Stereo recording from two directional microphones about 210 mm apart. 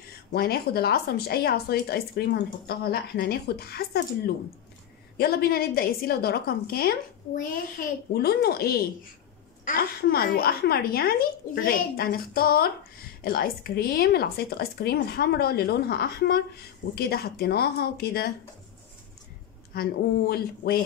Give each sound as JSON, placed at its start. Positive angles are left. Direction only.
{"t": 0.3, "sound": "speech", "side_deg": 45}
{"t": 5.1, "sound": "speech", "side_deg": 50}
{"t": 19.7, "sound": "speech", "side_deg": 45}